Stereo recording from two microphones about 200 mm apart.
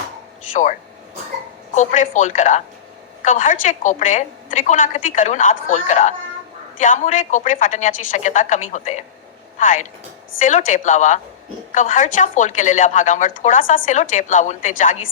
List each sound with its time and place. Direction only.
0.5 s a woman's voice: 40° left (ahead or behind)